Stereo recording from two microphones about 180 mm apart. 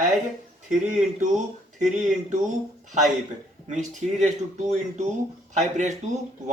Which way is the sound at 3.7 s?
40° right (ahead or behind).